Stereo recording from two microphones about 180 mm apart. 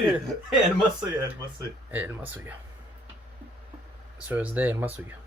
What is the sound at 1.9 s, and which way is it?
Speech, 10° right (ahead or behind).